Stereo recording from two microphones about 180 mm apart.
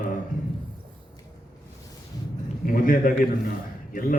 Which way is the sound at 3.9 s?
50° left (ahead or behind).